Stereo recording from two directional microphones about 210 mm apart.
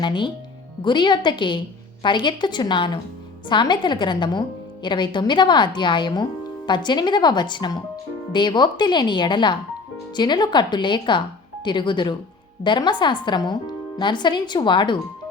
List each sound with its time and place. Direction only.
0.0 s a woman's voice: 20° left (ahead or behind)